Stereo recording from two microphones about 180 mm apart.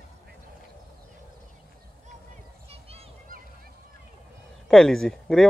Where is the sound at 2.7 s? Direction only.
35° right (ahead or behind).